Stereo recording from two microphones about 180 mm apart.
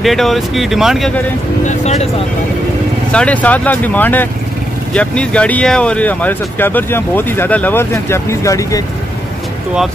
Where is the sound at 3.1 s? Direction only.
5° left (ahead or behind).